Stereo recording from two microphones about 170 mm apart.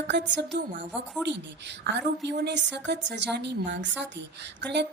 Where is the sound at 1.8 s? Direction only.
85° right.